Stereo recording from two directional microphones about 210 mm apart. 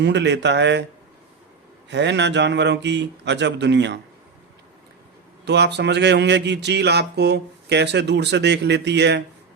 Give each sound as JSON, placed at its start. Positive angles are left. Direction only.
{"t": 0.0, "sound": "speech", "side_deg": -55}
{"t": 1.9, "sound": "speech", "side_deg": -55}
{"t": 5.5, "sound": "speech", "side_deg": -55}